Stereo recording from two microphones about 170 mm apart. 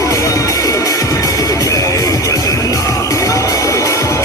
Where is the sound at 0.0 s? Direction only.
20° left (ahead or behind).